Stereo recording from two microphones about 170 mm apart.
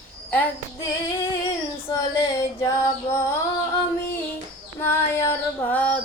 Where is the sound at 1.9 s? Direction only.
20° left (ahead or behind).